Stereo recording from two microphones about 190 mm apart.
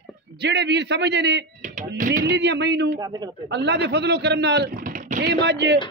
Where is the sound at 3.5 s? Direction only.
65° right (ahead or behind).